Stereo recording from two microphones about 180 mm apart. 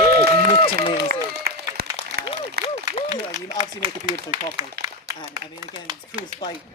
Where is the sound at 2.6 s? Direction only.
60° right (ahead or behind).